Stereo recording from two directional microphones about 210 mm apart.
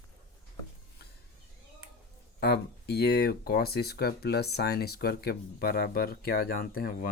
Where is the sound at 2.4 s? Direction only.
50° left (ahead or behind).